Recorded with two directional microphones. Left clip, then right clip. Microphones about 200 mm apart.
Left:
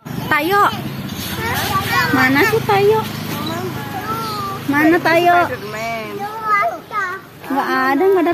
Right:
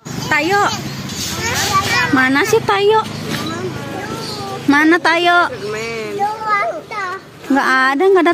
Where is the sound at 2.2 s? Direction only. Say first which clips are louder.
Right 1 dB; 40° right (ahead or behind).